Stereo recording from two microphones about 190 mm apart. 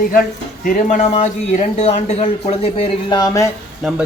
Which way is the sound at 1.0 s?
35° left (ahead or behind).